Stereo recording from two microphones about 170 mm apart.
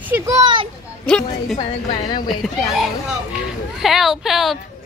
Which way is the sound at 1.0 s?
5° left (ahead or behind).